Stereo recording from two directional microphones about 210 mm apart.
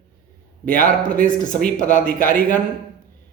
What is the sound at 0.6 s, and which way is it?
A man's voice, 40° left (ahead or behind).